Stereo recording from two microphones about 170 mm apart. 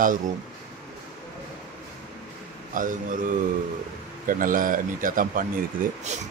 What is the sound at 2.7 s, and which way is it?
Speech, 50° right (ahead or behind).